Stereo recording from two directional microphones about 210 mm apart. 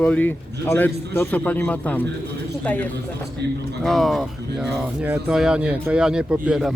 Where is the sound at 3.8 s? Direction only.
Centre (ahead or behind).